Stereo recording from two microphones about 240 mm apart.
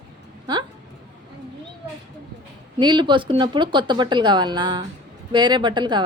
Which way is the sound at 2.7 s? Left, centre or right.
Centre.